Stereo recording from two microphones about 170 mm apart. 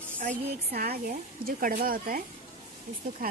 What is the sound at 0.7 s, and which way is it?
A woman's voice, 65° right (ahead or behind).